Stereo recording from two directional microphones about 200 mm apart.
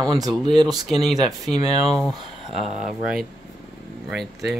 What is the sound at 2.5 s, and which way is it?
Speech, 35° right (ahead or behind).